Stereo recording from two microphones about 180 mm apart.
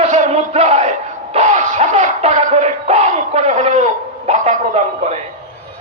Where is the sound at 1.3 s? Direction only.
40° right (ahead or behind).